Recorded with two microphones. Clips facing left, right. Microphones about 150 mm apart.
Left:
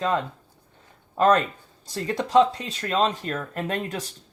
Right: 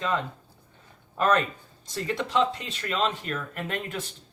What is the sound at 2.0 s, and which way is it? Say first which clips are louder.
Speech: left 6 dB; 40° left (ahead or behind).